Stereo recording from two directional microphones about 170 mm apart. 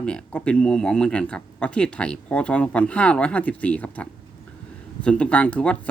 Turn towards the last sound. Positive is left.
turn(degrees=10)  # may be behind; listen again after turning